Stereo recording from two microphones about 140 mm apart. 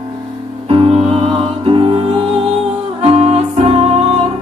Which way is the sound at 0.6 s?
40° right (ahead or behind).